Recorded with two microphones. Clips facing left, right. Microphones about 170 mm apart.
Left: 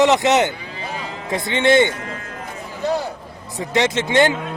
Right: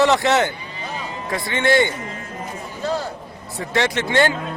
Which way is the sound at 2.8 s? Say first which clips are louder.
Left 3 dB; 15° left (ahead or behind).